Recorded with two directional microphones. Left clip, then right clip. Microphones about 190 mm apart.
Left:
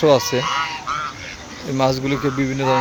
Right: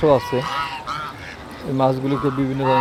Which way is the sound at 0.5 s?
45° right (ahead or behind).